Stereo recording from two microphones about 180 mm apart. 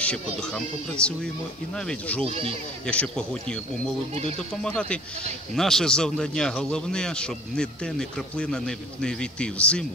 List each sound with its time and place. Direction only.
0.0 s a man's voice: 5° left (ahead or behind)
2.2 s speech: 30° right (ahead or behind)
2.9 s a man's voice: 5° left (ahead or behind)
4.6 s a man's voice: 5° left (ahead or behind)